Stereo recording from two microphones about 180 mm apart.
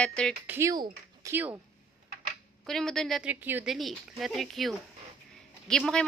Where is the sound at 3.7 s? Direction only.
Centre (ahead or behind).